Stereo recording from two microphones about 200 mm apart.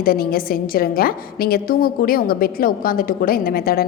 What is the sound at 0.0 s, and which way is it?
A woman's voice, 50° left (ahead or behind).